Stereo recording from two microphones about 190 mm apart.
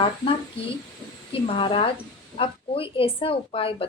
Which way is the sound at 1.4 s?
30° left (ahead or behind).